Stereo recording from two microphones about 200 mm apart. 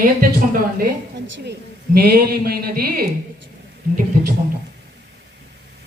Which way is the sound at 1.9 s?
50° right (ahead or behind).